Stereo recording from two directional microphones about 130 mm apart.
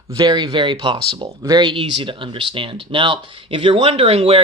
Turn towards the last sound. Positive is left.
turn(degrees=-45)  # may be behind; listen again after turning